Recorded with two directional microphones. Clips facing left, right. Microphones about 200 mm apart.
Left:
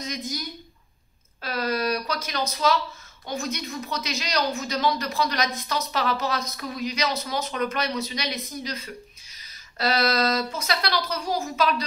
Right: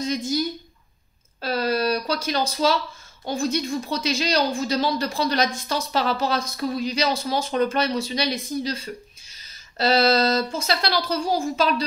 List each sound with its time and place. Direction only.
0.0 s speech: 30° right (ahead or behind)
1.4 s a sound: 30° right (ahead or behind)
3.3 s speech: 30° right (ahead or behind)